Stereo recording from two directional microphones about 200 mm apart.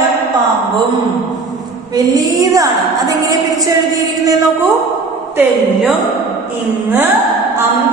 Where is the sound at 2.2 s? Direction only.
15° right (ahead or behind).